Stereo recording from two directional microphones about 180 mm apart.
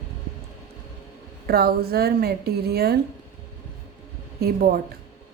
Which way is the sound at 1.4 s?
60° right (ahead or behind).